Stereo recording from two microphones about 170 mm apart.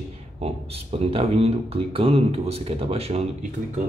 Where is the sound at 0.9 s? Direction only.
35° right (ahead or behind).